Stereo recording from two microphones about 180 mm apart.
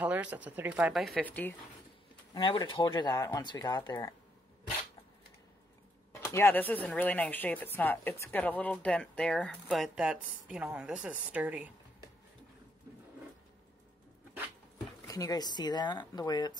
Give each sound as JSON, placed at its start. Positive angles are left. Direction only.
{"t": 0.0, "sound": "dishes", "side_deg": -10}
{"t": 2.3, "sound": "speech", "side_deg": 30}
{"t": 6.2, "sound": "speech", "side_deg": 15}
{"t": 10.2, "sound": "dishes", "side_deg": -5}
{"t": 15.0, "sound": "speech", "side_deg": 20}